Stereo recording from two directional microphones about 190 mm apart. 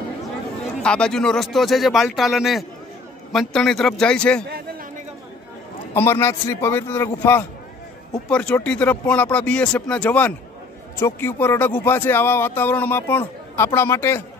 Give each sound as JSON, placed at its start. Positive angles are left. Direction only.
{"t": 0.8, "sound": "speech", "side_deg": 5}
{"t": 4.5, "sound": "a sound", "side_deg": -55}
{"t": 5.9, "sound": "speech", "side_deg": 10}